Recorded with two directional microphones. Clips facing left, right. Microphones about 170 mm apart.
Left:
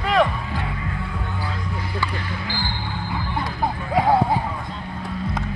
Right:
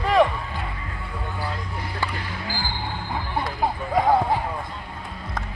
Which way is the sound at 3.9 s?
5° left (ahead or behind).